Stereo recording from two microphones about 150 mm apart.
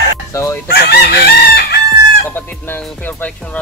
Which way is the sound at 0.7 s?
90° left.